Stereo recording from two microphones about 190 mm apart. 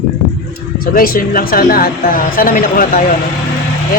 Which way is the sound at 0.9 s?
50° left (ahead or behind).